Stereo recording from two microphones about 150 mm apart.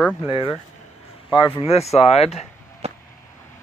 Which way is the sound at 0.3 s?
35° left (ahead or behind).